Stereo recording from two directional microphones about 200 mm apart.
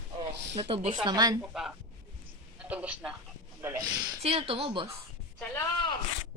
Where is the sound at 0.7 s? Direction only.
30° right (ahead or behind).